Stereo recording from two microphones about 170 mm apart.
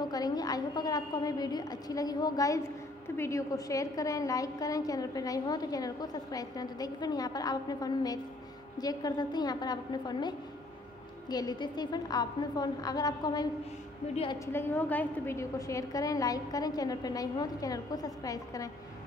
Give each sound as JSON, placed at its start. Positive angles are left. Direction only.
{"t": 0.0, "sound": "a woman's voice", "side_deg": 20}